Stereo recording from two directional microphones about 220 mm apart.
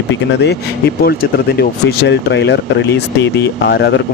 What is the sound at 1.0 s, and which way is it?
Speech, 45° left (ahead or behind).